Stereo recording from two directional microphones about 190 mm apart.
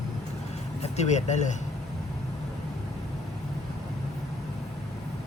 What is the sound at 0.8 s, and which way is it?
Speech, 35° left (ahead or behind).